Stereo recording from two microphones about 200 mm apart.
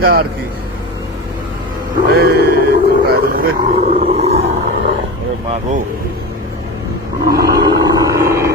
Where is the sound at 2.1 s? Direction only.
50° right (ahead or behind).